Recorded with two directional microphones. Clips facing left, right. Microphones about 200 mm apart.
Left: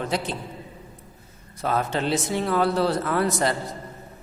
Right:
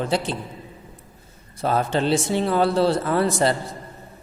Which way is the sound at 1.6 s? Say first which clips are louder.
Right 3 dB; 30° right (ahead or behind).